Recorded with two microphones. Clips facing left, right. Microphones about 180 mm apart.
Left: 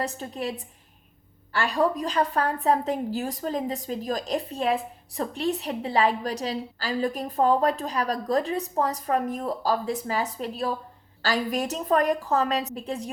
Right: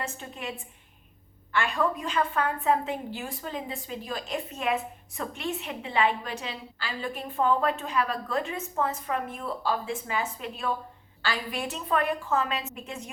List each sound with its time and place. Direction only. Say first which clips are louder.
0.0 s a woman's voice: left 6 dB; 35° left (ahead or behind)